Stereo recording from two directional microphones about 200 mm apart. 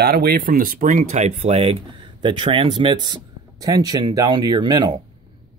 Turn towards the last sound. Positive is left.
turn(degrees=-20)  # may be behind; listen again after turning